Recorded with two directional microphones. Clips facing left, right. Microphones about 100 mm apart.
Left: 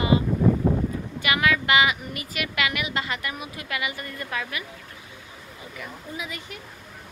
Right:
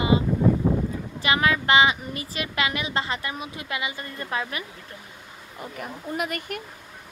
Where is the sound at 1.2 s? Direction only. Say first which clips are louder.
Right 1 dB; 30° right (ahead or behind).